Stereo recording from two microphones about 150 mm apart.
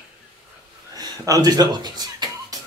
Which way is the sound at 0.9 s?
25° right (ahead or behind).